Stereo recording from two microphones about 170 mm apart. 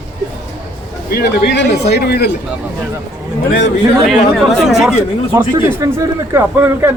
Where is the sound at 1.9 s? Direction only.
70° left (ahead or behind).